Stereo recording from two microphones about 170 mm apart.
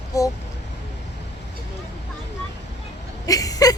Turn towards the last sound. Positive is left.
turn(degrees=20)  # may be behind; listen again after turning